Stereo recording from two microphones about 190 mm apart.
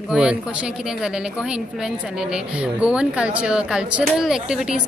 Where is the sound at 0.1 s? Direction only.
5° right (ahead or behind).